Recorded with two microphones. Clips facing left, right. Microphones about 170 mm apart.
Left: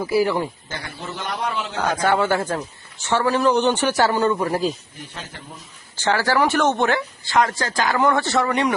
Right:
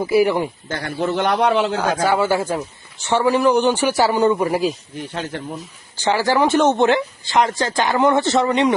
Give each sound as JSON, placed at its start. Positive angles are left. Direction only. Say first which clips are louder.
{"t": 0.0, "sound": "speech", "louder": "right 3 dB", "side_deg": -20}
{"t": 0.7, "sound": "a man's voice", "louder": "right 10 dB", "side_deg": -60}
{"t": 1.8, "sound": "a man's voice", "louder": "right 2 dB", "side_deg": -5}
{"t": 6.0, "sound": "speech", "louder": "right 2 dB", "side_deg": -15}